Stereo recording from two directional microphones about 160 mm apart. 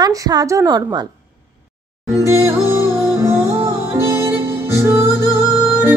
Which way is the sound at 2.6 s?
15° right (ahead or behind).